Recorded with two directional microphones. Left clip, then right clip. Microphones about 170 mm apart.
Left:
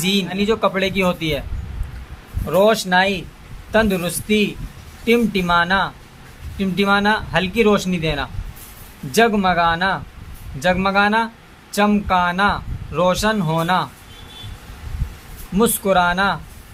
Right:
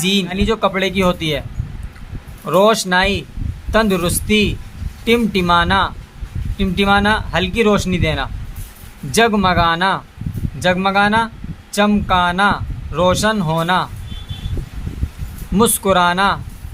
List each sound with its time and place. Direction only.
0.0 s speech: 20° right (ahead or behind)
2.5 s speech: 25° right (ahead or behind)
15.5 s speech: 25° right (ahead or behind)